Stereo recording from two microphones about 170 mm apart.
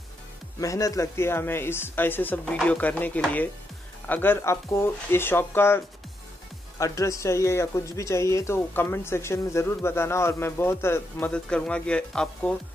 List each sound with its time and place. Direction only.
0.6 s speech: 20° left (ahead or behind)
6.8 s speech: 20° left (ahead or behind)